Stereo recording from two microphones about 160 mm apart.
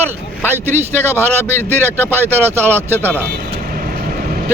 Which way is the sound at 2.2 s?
15° right (ahead or behind).